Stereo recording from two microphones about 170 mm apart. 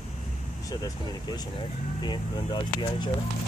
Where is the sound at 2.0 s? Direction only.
25° left (ahead or behind).